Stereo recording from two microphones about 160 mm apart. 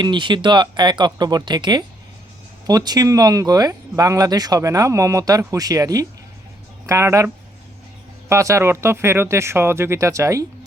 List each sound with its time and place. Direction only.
0.0 s speech: 30° right (ahead or behind)
8.3 s speech: 20° right (ahead or behind)